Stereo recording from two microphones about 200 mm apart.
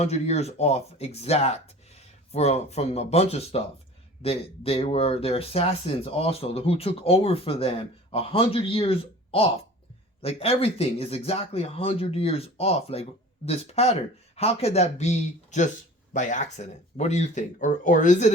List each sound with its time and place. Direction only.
0.0 s speech: 35° left (ahead or behind)